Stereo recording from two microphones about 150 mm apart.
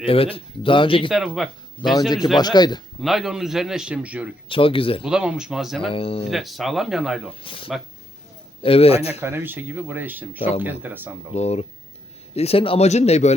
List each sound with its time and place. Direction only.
0.0 s speech: 40° left (ahead or behind)
1.1 s speech: centre (ahead or behind)
2.0 s speech: 25° left (ahead or behind)
3.0 s a man's voice: centre (ahead or behind)
4.4 s speech: 35° left (ahead or behind)
5.0 s a man's voice: 5° right (ahead or behind)
5.9 s speech: 40° left (ahead or behind)
6.3 s a man's voice: centre (ahead or behind)
7.3 s speech: 35° left (ahead or behind)
9.2 s speech: 15° right (ahead or behind)
11.3 s speech: 45° left (ahead or behind)